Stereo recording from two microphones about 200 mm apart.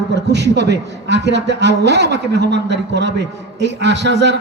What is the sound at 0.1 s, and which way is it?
A man's voice, 60° right (ahead or behind).